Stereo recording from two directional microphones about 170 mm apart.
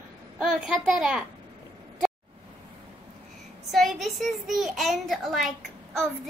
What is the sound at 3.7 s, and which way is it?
A child's voice, centre (ahead or behind).